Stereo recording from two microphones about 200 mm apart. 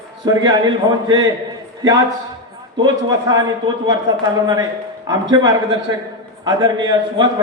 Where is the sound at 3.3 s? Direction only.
20° right (ahead or behind).